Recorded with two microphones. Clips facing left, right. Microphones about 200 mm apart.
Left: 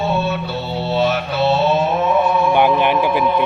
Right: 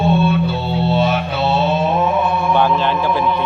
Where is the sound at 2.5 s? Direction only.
15° left (ahead or behind).